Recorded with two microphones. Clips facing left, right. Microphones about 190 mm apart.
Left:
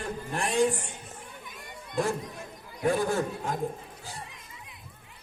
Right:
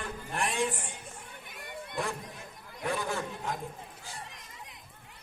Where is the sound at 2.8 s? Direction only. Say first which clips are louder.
Left 7 dB; 50° left (ahead or behind).